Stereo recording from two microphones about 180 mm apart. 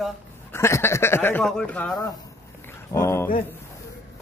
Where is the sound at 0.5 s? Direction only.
15° left (ahead or behind).